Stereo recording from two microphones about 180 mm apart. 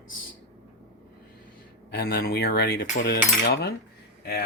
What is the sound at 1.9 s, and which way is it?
Cutlery, 60° left (ahead or behind).